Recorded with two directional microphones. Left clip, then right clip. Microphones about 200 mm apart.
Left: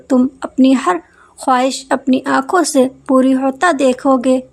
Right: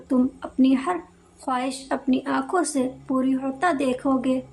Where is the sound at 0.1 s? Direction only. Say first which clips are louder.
Left 9 dB; 50° left (ahead or behind).